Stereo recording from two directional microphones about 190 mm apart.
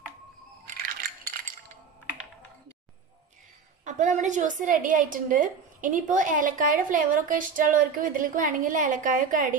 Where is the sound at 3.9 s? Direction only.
40° right (ahead or behind).